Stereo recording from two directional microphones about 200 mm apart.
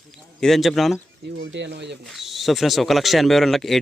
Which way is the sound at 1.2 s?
65° right (ahead or behind).